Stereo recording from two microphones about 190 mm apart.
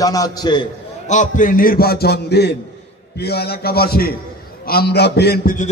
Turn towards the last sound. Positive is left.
turn(degrees=60)  # may be behind; listen again after turning